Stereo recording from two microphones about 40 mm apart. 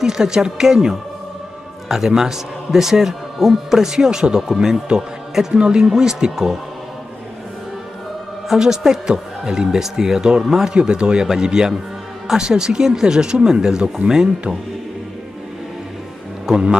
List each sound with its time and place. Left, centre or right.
0.0 s speech: centre
8.5 s speech: centre
10.7 s speech: right
16.4 s a man's voice: right